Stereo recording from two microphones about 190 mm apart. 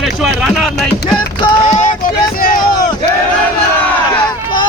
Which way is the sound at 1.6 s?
40° left (ahead or behind).